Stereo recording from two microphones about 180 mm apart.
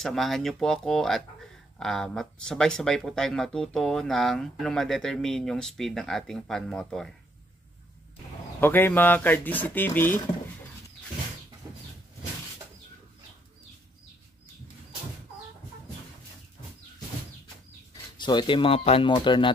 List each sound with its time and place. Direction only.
0.0 s speech: centre (ahead or behind)
8.5 s speech: 10° left (ahead or behind)
18.1 s speech: 25° left (ahead or behind)